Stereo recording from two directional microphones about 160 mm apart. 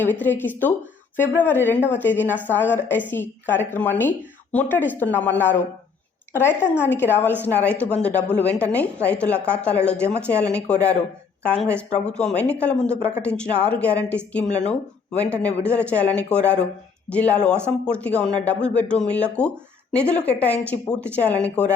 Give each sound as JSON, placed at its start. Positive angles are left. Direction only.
{"t": 0.0, "sound": "a woman's voice", "side_deg": 10}
{"t": 12.0, "sound": "a woman's voice", "side_deg": 5}
{"t": 14.4, "sound": "speech", "side_deg": 45}
{"t": 14.7, "sound": "a woman's voice", "side_deg": 10}